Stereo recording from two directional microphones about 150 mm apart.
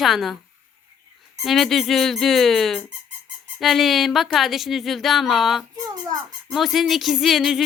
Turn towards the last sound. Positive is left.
turn(degrees=0)  # may be behind; listen again after turning